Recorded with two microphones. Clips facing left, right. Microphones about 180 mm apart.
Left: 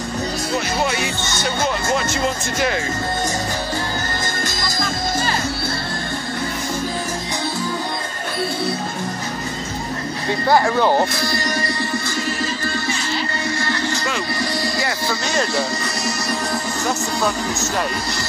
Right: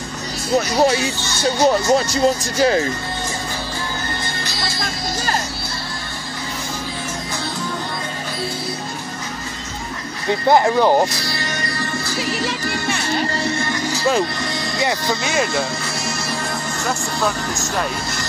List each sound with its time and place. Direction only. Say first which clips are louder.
0.6 s speech: right 7 dB; 35° right (ahead or behind)
4.5 s music: left 1 dB; 45° left (ahead or behind)
10.5 s speech: right 2 dB; 15° right (ahead or behind)
12.2 s music: right 1 dB; 85° right
13.4 s music: right 1 dB; 20° right (ahead or behind)
14.4 s music: left 2 dB; 5° left (ahead or behind)
14.8 s speech: right 3 dB; 20° right (ahead or behind)
15.2 s speech: left 1 dB; 5° right (ahead or behind)